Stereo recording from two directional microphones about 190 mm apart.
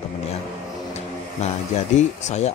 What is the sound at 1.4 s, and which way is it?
Speech, 35° left (ahead or behind).